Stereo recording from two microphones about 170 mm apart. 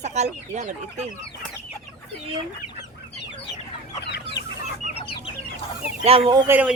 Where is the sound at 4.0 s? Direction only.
85° left.